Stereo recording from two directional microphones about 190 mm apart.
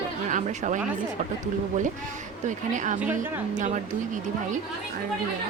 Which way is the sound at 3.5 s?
40° right (ahead or behind).